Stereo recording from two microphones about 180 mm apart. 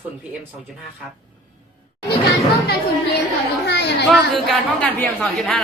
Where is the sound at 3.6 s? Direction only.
70° left (ahead or behind).